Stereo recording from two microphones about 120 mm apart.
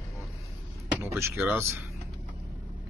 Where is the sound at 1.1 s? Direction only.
20° right (ahead or behind).